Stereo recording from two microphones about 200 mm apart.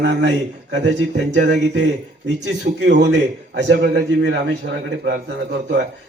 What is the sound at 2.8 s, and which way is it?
A man's voice, 60° right (ahead or behind).